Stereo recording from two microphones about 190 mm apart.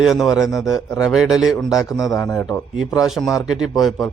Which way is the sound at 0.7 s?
15° left (ahead or behind).